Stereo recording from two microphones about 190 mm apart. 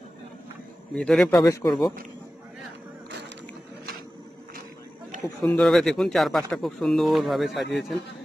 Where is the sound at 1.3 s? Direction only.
15° left (ahead or behind).